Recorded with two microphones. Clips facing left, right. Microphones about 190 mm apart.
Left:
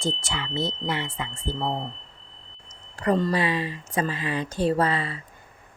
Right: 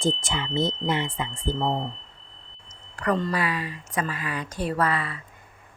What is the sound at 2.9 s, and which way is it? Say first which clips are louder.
Speech: left 2 dB; 25° left (ahead or behind).